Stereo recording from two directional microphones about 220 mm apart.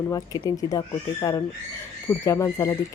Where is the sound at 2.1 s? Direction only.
15° left (ahead or behind).